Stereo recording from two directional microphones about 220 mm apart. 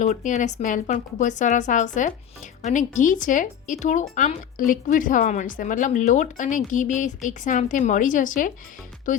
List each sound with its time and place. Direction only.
0.0 s speech: 35° left (ahead or behind)